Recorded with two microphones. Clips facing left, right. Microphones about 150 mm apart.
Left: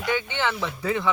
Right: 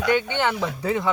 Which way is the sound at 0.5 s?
20° right (ahead or behind).